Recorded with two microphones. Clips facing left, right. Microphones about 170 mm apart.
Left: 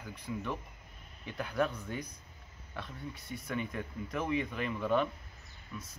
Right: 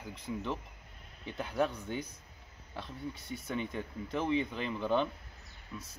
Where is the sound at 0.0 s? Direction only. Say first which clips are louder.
Right 1 dB; 25° right (ahead or behind).